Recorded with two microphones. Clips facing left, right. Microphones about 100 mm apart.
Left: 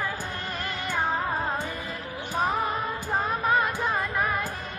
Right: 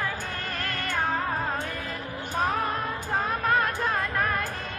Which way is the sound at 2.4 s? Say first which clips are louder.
Left 1 dB; 10° left (ahead or behind).